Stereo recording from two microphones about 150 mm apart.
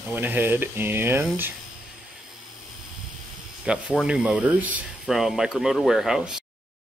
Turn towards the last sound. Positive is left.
turn(degrees=-5)  # may be behind; listen again after turning